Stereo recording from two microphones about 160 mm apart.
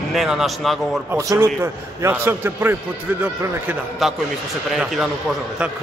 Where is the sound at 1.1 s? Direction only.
15° right (ahead or behind).